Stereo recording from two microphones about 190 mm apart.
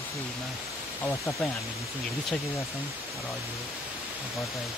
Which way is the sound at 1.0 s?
10° left (ahead or behind).